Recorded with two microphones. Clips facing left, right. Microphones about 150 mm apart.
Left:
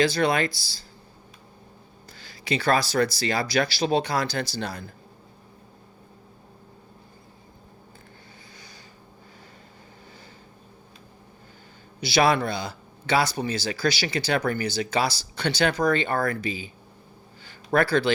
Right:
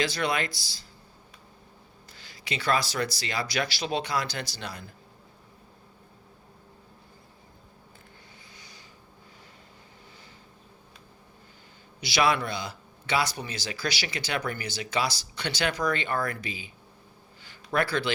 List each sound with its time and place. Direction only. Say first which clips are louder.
0.0 s speech: left 6 dB; 30° left (ahead or behind)
2.5 s speech: left 5 dB; 35° left (ahead or behind)
11.9 s speech: left 4 dB; 35° left (ahead or behind)
17.5 s a sound: left 6 dB; 40° left (ahead or behind)